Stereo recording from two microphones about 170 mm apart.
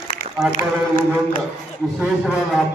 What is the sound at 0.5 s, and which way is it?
Speech, 50° left (ahead or behind).